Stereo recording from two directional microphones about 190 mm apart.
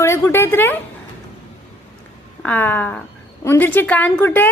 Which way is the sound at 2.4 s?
10° left (ahead or behind).